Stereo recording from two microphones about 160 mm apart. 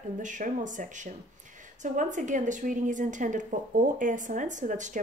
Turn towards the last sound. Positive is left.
turn(degrees=-50)  # may be behind; listen again after turning